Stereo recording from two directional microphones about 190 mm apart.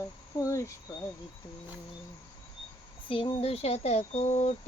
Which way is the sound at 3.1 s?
30° left (ahead or behind).